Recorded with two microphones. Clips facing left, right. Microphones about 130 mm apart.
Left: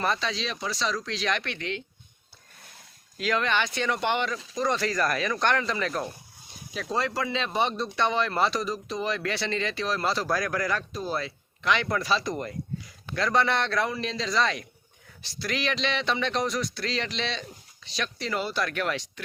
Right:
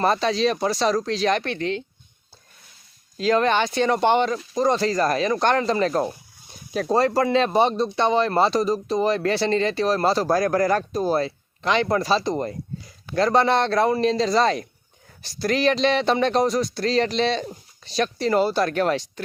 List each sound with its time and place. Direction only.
0.0 s speech: 40° right (ahead or behind)
3.2 s speech: 35° right (ahead or behind)